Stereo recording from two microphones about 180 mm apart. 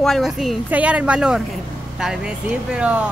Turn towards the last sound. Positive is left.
turn(degrees=-5)  # may be behind; listen again after turning